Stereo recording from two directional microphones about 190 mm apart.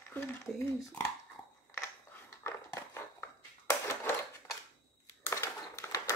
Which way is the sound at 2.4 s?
15° left (ahead or behind).